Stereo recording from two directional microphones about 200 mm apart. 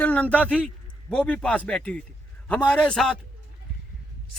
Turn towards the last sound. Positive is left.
turn(degrees=5)  # may be behind; listen again after turning